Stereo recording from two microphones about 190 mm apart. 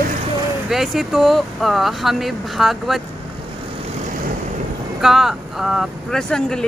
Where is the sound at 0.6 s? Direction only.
Centre (ahead or behind).